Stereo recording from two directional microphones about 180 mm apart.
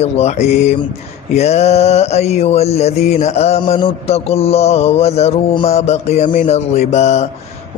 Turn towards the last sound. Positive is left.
turn(degrees=35)  # may be behind; listen again after turning